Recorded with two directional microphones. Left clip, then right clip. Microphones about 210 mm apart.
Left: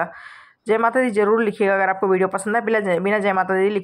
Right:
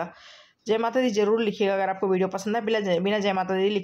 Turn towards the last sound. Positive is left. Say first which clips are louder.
# left 6 dB
turn(degrees=10)  # may be behind; listen again after turning